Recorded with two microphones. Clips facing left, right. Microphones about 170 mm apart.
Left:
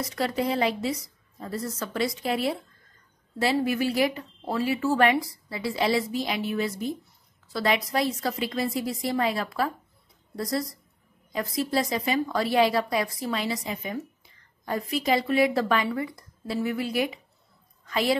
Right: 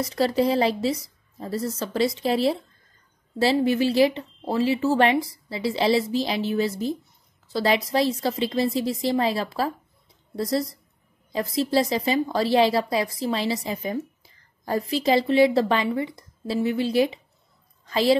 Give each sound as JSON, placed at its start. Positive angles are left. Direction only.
{"t": 0.0, "sound": "a woman's voice", "side_deg": -30}